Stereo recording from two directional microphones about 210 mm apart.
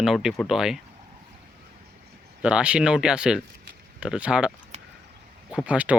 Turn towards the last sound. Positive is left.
turn(degrees=-5)  # may be behind; listen again after turning